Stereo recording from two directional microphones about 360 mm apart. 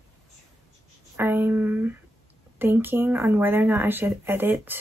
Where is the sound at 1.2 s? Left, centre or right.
Centre.